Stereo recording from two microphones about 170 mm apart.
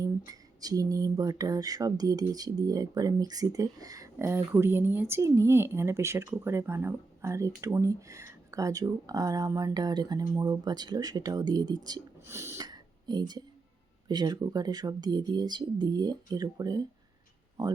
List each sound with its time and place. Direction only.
0.3 s speech: 20° right (ahead or behind)